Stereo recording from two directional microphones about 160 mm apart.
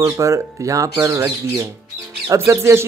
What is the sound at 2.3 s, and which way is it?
Speech, 20° right (ahead or behind).